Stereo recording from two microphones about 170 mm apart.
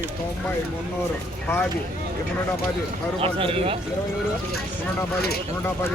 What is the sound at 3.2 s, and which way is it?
Speech, 35° right (ahead or behind).